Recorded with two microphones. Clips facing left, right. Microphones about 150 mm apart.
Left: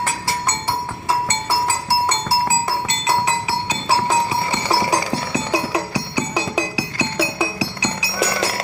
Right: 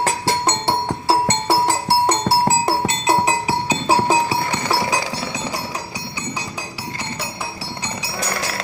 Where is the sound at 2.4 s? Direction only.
40° right (ahead or behind).